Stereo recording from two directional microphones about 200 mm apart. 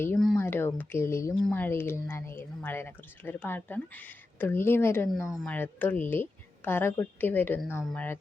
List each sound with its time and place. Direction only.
0.0 s a sound: 5° left (ahead or behind)
0.3 s speech: 10° left (ahead or behind)
5.3 s speech: centre (ahead or behind)
5.5 s speech: 10° left (ahead or behind)